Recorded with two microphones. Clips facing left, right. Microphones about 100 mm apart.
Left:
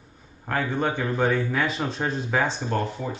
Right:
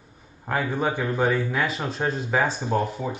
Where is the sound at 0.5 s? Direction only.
10° right (ahead or behind).